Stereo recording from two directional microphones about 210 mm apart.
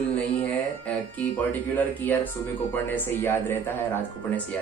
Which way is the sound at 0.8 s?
10° left (ahead or behind).